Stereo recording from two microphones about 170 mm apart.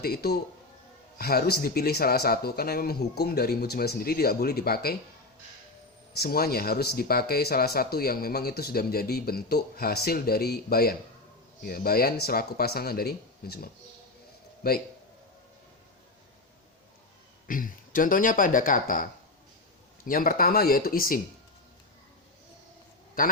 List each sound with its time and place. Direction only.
0.0 s a man's voice: 65° left (ahead or behind)
6.1 s speech: 65° left (ahead or behind)
17.5 s speech: 55° left (ahead or behind)
20.1 s speech: 55° left (ahead or behind)
23.2 s speech: 55° left (ahead or behind)